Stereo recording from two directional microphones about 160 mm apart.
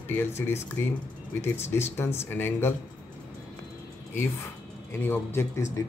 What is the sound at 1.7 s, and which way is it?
A man's voice, 15° left (ahead or behind).